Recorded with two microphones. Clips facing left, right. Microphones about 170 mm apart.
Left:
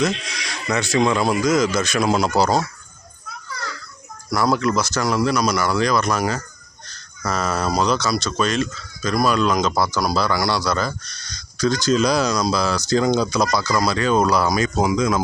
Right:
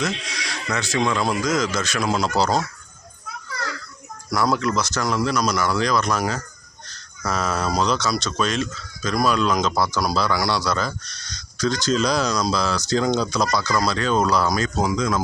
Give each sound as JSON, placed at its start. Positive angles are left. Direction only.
{"t": 0.7, "sound": "speech", "side_deg": 20}
{"t": 1.2, "sound": "speech", "side_deg": 5}
{"t": 4.3, "sound": "speech", "side_deg": 0}